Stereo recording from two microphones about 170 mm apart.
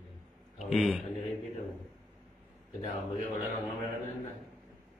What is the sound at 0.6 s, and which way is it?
Speech, 5° right (ahead or behind).